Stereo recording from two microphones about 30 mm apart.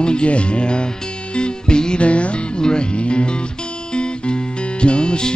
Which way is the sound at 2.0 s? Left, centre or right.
Left.